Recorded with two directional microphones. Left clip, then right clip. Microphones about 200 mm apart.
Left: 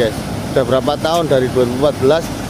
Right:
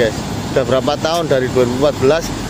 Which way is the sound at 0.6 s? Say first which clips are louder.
Even; 10° left (ahead or behind).